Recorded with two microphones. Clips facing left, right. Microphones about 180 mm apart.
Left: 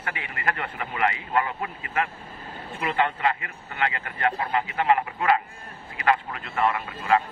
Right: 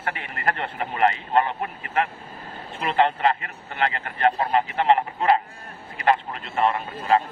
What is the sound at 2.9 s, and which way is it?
A man's voice, 35° right (ahead or behind).